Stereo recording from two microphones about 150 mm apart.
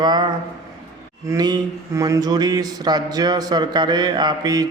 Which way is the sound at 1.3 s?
25° right (ahead or behind).